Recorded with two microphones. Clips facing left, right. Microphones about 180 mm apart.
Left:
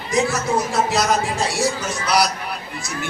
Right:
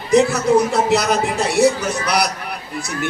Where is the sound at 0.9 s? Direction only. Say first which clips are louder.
Right 3 dB; 65° right (ahead or behind).